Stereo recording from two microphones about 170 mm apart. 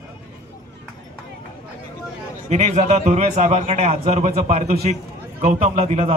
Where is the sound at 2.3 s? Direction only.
45° right (ahead or behind).